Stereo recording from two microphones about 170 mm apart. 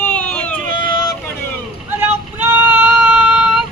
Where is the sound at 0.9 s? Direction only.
25° left (ahead or behind).